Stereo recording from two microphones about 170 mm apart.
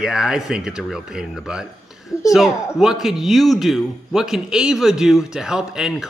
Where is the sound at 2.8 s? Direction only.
Centre (ahead or behind).